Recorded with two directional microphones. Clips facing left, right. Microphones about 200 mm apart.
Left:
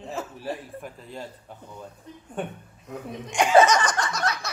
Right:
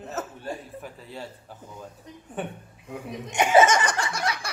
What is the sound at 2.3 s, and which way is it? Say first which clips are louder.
Speech: left 1 dB; 10° right (ahead or behind).